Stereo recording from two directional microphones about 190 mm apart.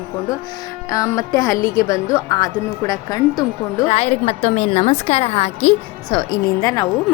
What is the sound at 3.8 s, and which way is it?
A woman's voice, 35° left (ahead or behind).